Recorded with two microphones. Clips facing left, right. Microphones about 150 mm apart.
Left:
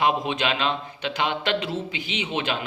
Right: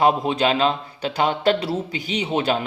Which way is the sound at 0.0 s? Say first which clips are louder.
Right 5 dB; 35° right (ahead or behind).